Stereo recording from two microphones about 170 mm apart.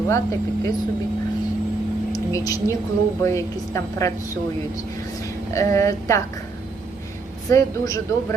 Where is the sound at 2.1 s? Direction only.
20° left (ahead or behind).